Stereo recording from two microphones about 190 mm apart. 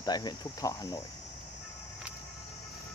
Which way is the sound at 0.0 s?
20° left (ahead or behind).